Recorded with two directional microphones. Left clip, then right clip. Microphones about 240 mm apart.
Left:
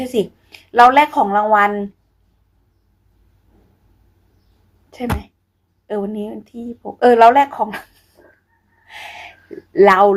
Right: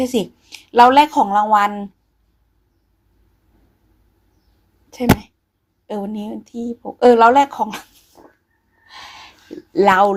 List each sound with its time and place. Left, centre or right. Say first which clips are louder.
0.0 s speech: even; right
4.9 s speech: right 7 dB; right
8.9 s a sound: left 4 dB; centre
9.7 s speech: left 3 dB; right